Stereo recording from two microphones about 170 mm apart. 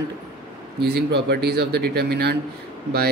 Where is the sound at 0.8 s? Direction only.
75° right (ahead or behind).